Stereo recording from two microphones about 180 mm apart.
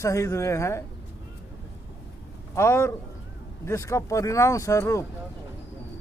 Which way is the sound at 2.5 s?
15° left (ahead or behind).